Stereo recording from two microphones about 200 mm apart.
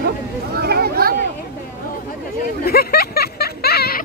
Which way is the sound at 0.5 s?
50° right (ahead or behind).